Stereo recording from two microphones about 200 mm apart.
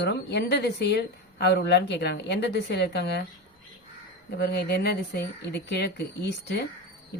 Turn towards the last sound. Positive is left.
turn(degrees=55)  # may be behind; listen again after turning